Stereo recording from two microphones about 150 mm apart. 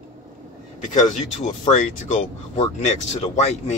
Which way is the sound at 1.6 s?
50° left (ahead or behind).